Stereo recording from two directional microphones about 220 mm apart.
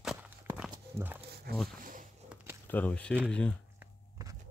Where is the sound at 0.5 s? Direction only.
5° right (ahead or behind).